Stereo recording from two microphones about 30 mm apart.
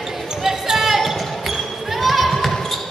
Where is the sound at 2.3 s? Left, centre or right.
Centre.